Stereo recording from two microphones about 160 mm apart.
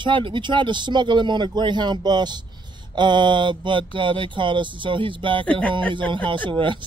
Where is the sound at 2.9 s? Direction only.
30° right (ahead or behind).